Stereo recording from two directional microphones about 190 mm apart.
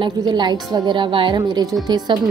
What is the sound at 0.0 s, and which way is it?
A woman's voice, 25° right (ahead or behind).